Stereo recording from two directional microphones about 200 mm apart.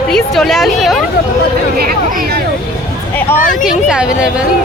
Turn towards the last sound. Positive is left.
turn(degrees=-5)  # may be behind; listen again after turning